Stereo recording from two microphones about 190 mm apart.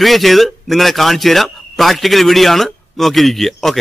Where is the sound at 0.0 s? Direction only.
Centre (ahead or behind).